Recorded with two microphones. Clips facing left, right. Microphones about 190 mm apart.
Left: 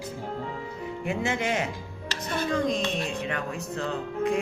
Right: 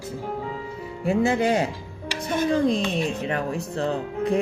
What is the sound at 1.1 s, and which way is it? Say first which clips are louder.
Speech: right 8 dB; 35° right (ahead or behind).